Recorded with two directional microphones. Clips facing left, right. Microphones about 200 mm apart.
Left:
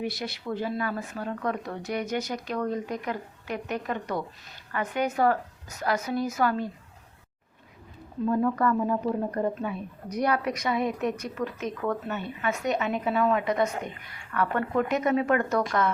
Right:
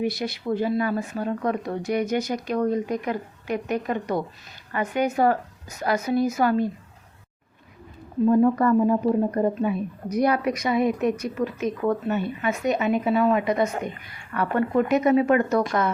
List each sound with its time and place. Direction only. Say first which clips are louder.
0.0 s speech: right 6 dB; 15° right (ahead or behind)
8.2 s speech: right 6 dB; 25° right (ahead or behind)
11.8 s speech: right 6 dB; 20° right (ahead or behind)